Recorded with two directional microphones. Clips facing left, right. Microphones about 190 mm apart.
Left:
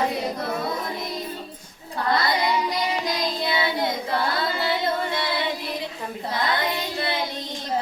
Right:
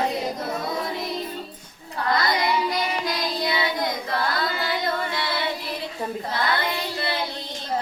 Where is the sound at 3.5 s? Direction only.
25° left (ahead or behind).